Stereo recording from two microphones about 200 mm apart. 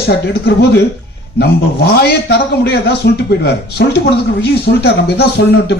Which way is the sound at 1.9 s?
55° left (ahead or behind).